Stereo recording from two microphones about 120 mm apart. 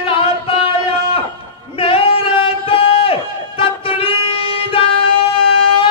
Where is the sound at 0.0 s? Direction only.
50° left (ahead or behind).